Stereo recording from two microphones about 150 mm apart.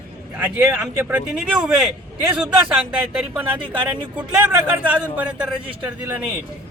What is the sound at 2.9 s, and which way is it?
A man's voice, 10° right (ahead or behind).